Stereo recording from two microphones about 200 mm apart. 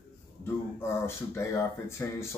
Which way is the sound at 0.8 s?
10° left (ahead or behind).